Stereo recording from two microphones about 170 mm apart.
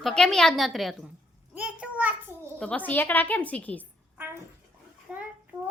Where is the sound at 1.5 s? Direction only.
10° right (ahead or behind).